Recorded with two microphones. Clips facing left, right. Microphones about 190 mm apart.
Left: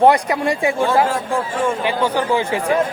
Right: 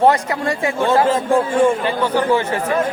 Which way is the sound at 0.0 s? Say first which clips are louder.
Left 1 dB; 15° left (ahead or behind).